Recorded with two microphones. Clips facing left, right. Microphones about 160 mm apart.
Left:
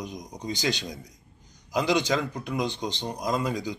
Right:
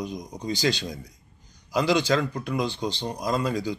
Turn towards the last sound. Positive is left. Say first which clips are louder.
# right 2 dB
turn(degrees=15)  # may be behind; listen again after turning